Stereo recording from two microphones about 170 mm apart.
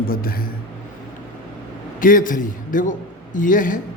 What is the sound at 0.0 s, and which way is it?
Speech, 60° left (ahead or behind).